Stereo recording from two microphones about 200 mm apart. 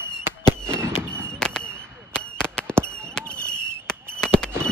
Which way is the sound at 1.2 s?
5° left (ahead or behind).